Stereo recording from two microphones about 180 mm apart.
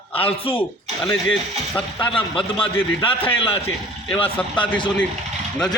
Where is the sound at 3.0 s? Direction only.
30° left (ahead or behind).